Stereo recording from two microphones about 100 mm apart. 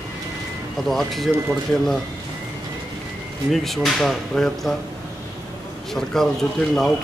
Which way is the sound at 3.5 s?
Centre (ahead or behind).